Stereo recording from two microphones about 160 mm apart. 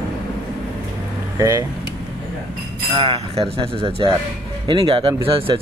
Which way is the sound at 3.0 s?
35° right (ahead or behind).